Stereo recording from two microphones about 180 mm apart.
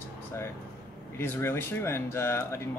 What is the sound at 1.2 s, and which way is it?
Speech, 15° left (ahead or behind).